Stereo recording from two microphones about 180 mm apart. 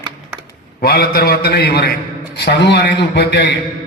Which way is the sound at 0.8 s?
60° left (ahead or behind).